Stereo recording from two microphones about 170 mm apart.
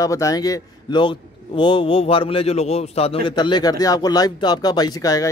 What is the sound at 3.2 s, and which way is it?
A man's voice, 25° left (ahead or behind).